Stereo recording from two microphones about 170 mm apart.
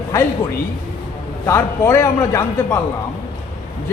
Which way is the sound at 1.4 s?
15° left (ahead or behind).